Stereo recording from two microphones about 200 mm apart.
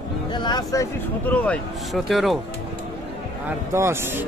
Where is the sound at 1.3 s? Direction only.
5° left (ahead or behind).